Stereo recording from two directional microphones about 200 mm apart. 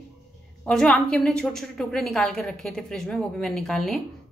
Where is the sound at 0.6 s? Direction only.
5° left (ahead or behind).